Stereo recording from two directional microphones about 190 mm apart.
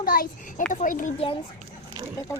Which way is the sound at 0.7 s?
45° left (ahead or behind).